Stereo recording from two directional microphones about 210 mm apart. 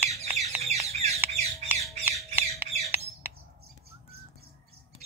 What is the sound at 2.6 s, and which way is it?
Squawk, 10° right (ahead or behind).